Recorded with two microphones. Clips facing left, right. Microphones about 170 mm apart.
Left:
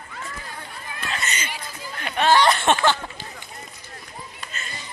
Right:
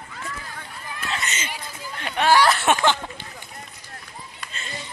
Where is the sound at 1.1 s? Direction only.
25° right (ahead or behind).